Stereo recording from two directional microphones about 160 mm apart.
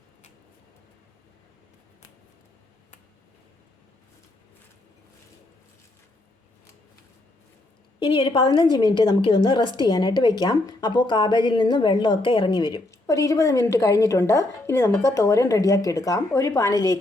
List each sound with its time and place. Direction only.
7.9 s a woman's voice: 30° left (ahead or behind)